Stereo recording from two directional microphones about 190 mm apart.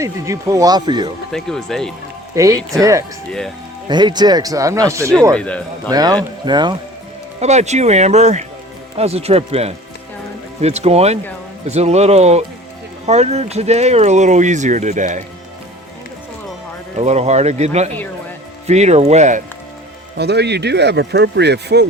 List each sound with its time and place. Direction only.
0.0 s speech: 15° right (ahead or behind)
1.3 s speech: centre (ahead or behind)
2.3 s speech: 15° right (ahead or behind)
3.8 s speech: 20° right (ahead or behind)
5.3 s speech: 5° left (ahead or behind)
5.9 s speech: 20° right (ahead or behind)
7.3 s speech: 35° right (ahead or behind)
17.0 s speech: 35° right (ahead or behind)
20.1 s speech: 60° right (ahead or behind)